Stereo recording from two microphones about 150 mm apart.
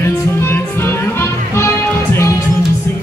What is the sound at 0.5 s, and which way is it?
Music, 15° left (ahead or behind).